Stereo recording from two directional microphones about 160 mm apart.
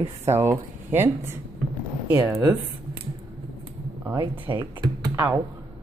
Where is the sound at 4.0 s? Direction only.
15° right (ahead or behind).